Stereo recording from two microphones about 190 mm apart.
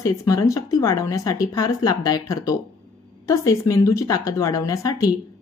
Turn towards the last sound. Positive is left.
turn(degrees=20)  # may be behind; listen again after turning